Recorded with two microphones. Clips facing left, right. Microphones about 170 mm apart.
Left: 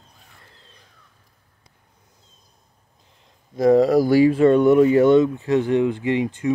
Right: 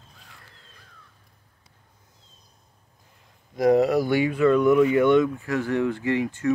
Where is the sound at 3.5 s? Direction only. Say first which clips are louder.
Left 4 dB; 30° left (ahead or behind).